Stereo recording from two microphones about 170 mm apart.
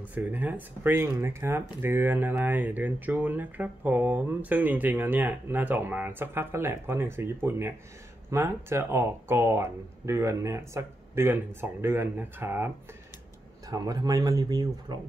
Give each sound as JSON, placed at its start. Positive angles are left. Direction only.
{"t": 0.0, "sound": "speech", "side_deg": -10}